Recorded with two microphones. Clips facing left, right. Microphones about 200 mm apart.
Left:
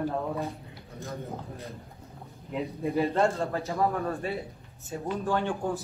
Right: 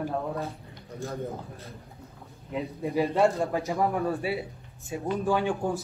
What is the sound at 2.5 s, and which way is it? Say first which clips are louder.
Speech: even; centre (ahead or behind).